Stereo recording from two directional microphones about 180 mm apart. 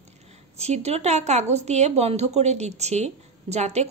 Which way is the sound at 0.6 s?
35° right (ahead or behind).